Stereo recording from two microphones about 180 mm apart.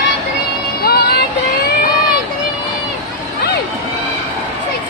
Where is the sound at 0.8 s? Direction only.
60° left (ahead or behind).